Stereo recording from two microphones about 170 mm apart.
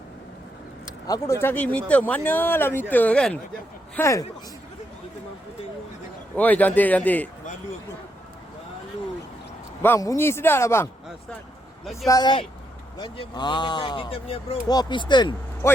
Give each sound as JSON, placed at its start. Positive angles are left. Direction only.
{"t": 1.0, "sound": "speech", "side_deg": 20}
{"t": 3.9, "sound": "speech", "side_deg": 15}
{"t": 6.3, "sound": "speech", "side_deg": 10}
{"t": 9.8, "sound": "speech", "side_deg": 15}
{"t": 12.0, "sound": "speech", "side_deg": 25}
{"t": 15.6, "sound": "speech", "side_deg": 15}